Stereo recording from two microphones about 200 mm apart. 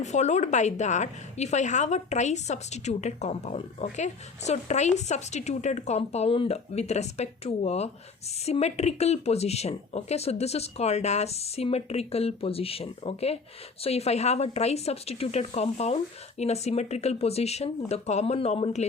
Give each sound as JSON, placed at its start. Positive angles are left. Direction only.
{"t": 0.0, "sound": "a woman's voice", "side_deg": 35}